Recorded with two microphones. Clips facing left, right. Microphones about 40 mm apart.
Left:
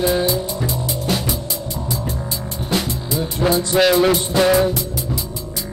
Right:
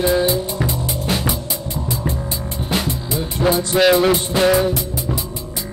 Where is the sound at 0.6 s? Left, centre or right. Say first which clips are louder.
Even; right.